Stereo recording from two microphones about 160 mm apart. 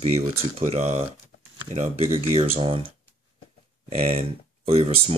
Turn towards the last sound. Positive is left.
turn(degrees=-40)  # may be behind; listen again after turning